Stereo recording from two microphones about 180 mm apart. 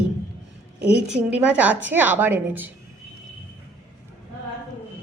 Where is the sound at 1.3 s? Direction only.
5° right (ahead or behind).